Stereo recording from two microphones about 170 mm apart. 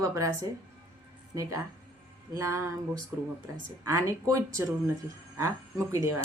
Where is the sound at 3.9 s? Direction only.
15° right (ahead or behind).